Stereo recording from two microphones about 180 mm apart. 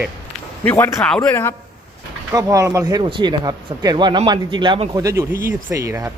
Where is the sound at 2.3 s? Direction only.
15° right (ahead or behind).